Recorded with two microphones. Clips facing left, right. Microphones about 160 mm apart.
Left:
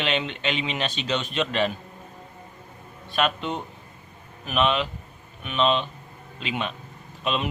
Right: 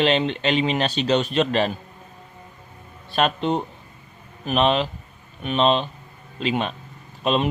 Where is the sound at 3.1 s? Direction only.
35° right (ahead or behind).